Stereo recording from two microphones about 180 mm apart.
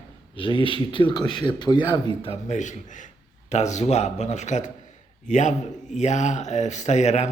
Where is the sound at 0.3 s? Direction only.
30° left (ahead or behind).